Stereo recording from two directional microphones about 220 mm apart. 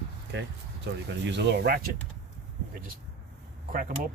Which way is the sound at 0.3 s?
50° right (ahead or behind).